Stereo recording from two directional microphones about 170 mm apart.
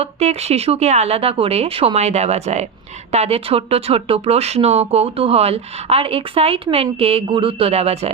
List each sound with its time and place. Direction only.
0.0 s speech: 40° right (ahead or behind)